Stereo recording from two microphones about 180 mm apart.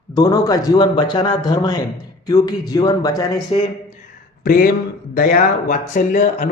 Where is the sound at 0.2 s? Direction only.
20° left (ahead or behind).